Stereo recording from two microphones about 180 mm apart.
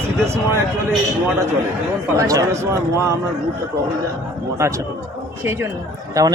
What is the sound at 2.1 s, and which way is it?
Speech, 20° right (ahead or behind).